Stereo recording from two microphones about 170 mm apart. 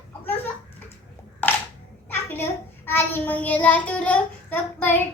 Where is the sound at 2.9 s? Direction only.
10° left (ahead or behind).